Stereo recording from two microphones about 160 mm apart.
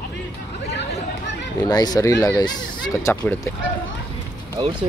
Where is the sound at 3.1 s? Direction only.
10° left (ahead or behind).